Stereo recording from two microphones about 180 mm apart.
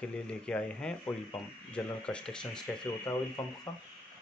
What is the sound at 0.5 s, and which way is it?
Speech, 5° left (ahead or behind).